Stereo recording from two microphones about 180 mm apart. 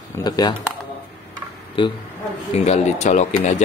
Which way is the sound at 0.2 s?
25° left (ahead or behind).